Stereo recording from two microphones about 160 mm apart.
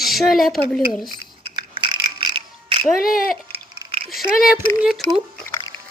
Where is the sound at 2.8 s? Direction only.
65° left (ahead or behind).